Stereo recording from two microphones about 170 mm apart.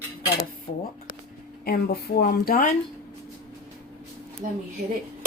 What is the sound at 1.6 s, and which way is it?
Speech, 65° left (ahead or behind).